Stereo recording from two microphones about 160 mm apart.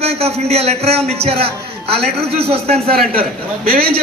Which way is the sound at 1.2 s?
40° right (ahead or behind).